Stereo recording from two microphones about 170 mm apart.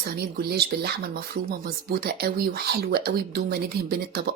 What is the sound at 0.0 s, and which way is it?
A woman's voice, 60° right (ahead or behind).